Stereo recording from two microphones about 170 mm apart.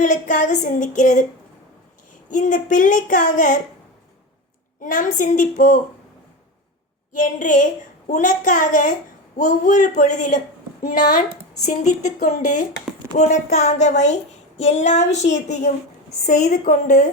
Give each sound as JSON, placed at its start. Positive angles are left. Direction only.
{"t": 0.0, "sound": "a woman's voice", "side_deg": 45}
{"t": 2.3, "sound": "a woman's voice", "side_deg": 50}
{"t": 4.8, "sound": "a woman's voice", "side_deg": 50}
{"t": 7.1, "sound": "a woman's voice", "side_deg": 50}
{"t": 11.6, "sound": "a woman's voice", "side_deg": 45}
{"t": 14.6, "sound": "a sound", "side_deg": 40}
{"t": 16.2, "sound": "a woman's voice", "side_deg": 45}